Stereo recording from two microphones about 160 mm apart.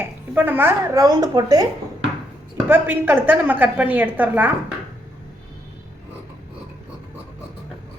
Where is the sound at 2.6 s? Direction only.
10° right (ahead or behind).